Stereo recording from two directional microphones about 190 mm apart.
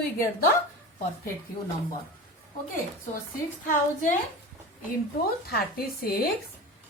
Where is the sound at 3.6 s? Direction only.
45° left (ahead or behind).